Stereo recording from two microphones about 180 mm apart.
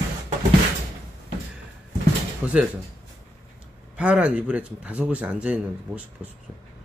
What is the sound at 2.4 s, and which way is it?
Speech, 5° right (ahead or behind).